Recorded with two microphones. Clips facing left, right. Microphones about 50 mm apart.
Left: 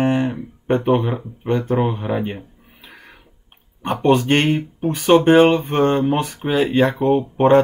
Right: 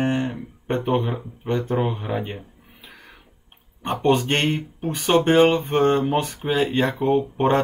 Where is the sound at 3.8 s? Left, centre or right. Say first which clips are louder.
Left 3 dB; centre.